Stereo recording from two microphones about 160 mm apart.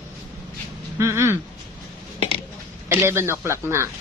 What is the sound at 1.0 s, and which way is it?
Speech, 15° right (ahead or behind).